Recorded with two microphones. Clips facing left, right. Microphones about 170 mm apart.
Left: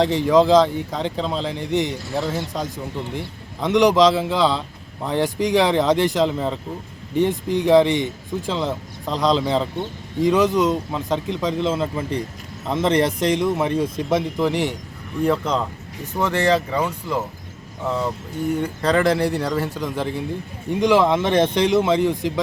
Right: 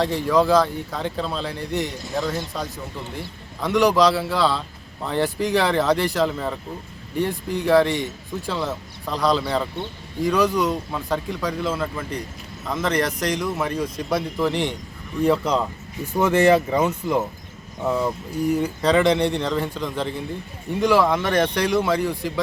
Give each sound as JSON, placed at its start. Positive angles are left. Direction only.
{"t": 0.0, "sound": "speech", "side_deg": 20}
{"t": 16.3, "sound": "speech", "side_deg": -15}